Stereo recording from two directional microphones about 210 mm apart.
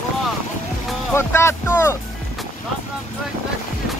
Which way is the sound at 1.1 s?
10° left (ahead or behind).